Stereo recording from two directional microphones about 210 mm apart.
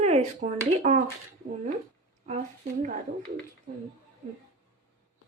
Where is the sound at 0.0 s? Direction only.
30° right (ahead or behind).